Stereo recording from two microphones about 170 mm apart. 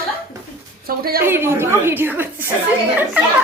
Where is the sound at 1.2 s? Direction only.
15° right (ahead or behind).